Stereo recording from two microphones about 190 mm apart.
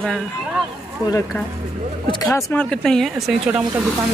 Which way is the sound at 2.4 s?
5° left (ahead or behind).